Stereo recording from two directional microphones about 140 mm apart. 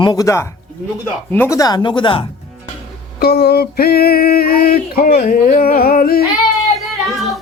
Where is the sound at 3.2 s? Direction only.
90° left.